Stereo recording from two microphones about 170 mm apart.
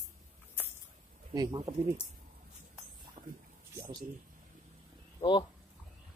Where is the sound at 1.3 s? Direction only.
20° right (ahead or behind).